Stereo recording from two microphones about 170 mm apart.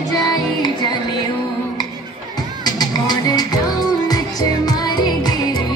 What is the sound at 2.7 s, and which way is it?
Music, 25° left (ahead or behind).